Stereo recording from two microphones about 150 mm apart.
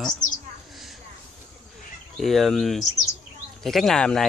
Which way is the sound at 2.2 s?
Centre (ahead or behind).